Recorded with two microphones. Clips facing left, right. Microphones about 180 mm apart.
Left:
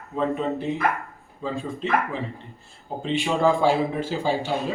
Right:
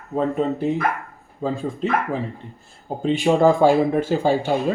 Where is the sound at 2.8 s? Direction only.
45° right (ahead or behind).